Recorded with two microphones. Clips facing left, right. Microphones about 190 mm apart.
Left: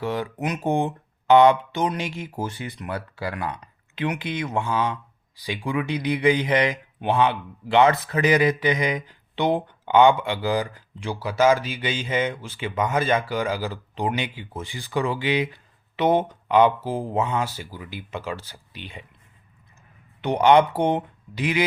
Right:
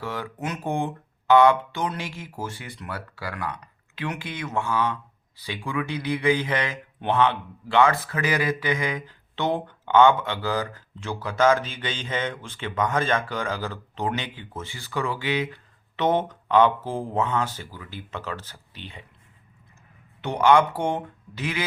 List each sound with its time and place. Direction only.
0.0 s speech: 20° left (ahead or behind)
20.2 s speech: 20° left (ahead or behind)